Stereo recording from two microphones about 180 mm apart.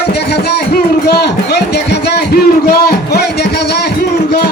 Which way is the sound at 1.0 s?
65° left (ahead or behind).